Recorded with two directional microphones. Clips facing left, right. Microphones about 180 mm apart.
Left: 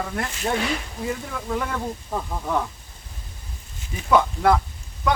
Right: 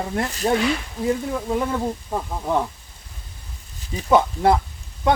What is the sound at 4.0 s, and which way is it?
Speech, 25° right (ahead or behind).